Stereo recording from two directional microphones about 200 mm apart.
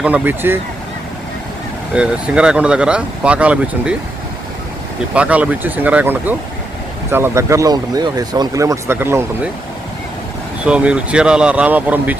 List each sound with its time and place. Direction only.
0.0 s speech: 10° right (ahead or behind)
1.9 s speech: 5° right (ahead or behind)
5.1 s speech: 5° right (ahead or behind)
10.7 s speech: 5° right (ahead or behind)